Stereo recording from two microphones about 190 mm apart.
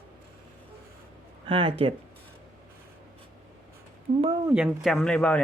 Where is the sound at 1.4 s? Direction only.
30° right (ahead or behind).